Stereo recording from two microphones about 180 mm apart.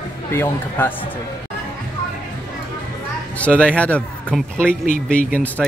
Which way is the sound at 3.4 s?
5° left (ahead or behind).